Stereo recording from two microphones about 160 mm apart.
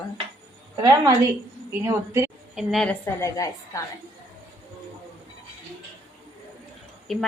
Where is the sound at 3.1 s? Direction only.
20° left (ahead or behind).